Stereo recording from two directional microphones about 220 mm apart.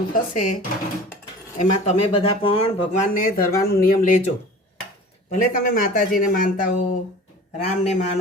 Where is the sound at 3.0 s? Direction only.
40° left (ahead or behind).